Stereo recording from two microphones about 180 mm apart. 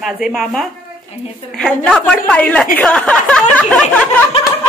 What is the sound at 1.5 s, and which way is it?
A woman's voice, 5° left (ahead or behind).